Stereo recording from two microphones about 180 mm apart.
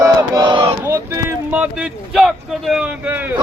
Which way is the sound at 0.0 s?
20° right (ahead or behind).